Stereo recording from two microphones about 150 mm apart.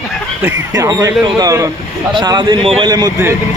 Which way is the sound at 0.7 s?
20° right (ahead or behind).